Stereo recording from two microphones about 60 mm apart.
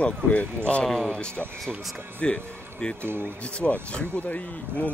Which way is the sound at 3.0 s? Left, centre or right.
Right.